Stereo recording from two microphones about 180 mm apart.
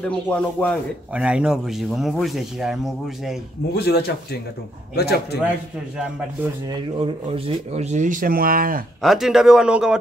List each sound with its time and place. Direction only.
0.0 s speech: 5° left (ahead or behind)
1.1 s speech: 5° right (ahead or behind)
3.7 s speech: 65° left (ahead or behind)
7.2 s speech: 30° right (ahead or behind); by 8.8 s 50° right (ahead or behind)
9.0 s speech: centre (ahead or behind)